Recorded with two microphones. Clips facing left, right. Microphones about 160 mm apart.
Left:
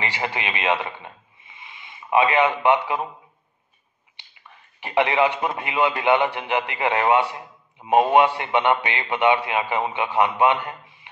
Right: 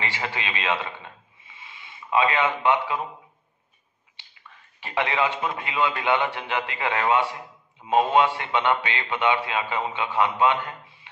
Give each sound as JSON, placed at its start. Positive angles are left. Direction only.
{"t": 0.0, "sound": "a sound", "side_deg": 15}
{"t": 2.1, "sound": "a man's voice", "side_deg": 15}
{"t": 4.8, "sound": "a man's voice", "side_deg": 20}